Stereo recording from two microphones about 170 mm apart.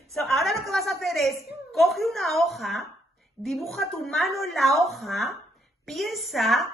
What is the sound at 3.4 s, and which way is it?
A man's voice, centre (ahead or behind).